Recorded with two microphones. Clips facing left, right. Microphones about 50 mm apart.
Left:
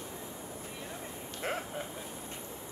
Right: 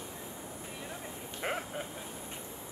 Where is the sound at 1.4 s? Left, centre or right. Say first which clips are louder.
Even; centre.